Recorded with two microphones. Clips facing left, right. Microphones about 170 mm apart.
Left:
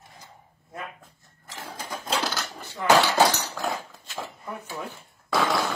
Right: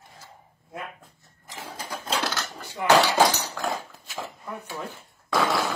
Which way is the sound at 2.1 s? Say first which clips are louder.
Even; 5° left (ahead or behind).